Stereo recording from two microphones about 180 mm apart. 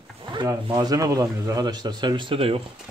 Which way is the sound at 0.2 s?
25° right (ahead or behind).